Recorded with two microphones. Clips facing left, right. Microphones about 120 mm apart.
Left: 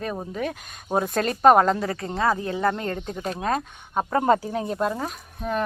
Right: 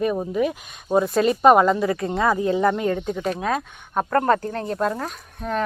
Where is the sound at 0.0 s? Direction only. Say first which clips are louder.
Right 7 dB; 5° right (ahead or behind).